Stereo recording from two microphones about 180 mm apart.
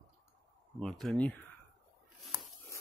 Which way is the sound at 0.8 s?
5° left (ahead or behind).